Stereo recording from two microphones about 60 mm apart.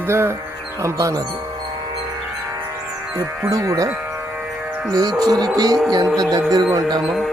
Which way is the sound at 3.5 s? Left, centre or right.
Right.